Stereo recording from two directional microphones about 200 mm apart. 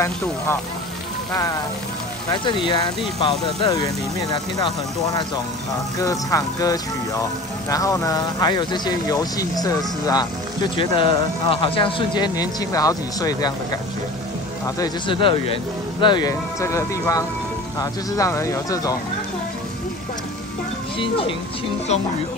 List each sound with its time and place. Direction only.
1.3 s speech: 20° left (ahead or behind)
14.8 s speech: 25° left (ahead or behind)